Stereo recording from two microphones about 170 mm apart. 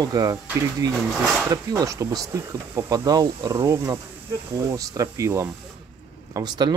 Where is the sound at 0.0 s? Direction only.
20° right (ahead or behind).